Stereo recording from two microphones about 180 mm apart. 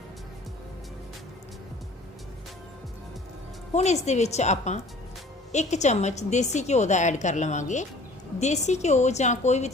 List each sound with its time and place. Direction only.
3.8 s a woman's voice: 40° left (ahead or behind)